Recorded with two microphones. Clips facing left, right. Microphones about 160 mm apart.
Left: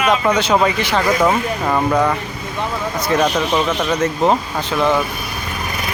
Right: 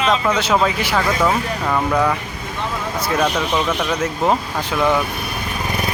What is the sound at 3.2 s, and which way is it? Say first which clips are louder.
Speech: left 2 dB; 10° left (ahead or behind).